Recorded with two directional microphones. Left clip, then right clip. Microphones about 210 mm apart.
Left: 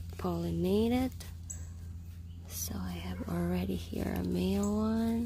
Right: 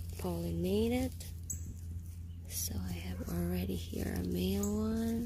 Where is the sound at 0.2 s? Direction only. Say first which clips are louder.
Left 4 dB; 15° left (ahead or behind).